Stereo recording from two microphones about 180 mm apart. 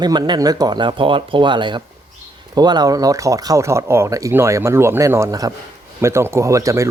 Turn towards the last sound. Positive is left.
turn(degrees=-15)  # may be behind; listen again after turning